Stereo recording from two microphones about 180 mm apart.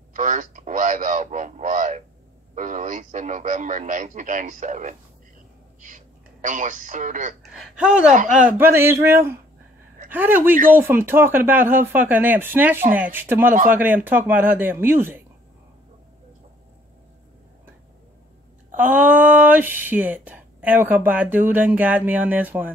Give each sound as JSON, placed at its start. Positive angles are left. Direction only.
{"t": 0.1, "sound": "a man's voice", "side_deg": -45}
{"t": 7.5, "sound": "a man's voice", "side_deg": -5}
{"t": 18.8, "sound": "speech", "side_deg": -10}